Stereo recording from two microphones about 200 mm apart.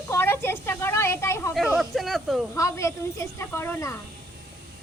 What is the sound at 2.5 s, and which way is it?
Speech, 15° left (ahead or behind).